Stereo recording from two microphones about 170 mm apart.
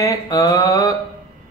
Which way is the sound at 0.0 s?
20° left (ahead or behind).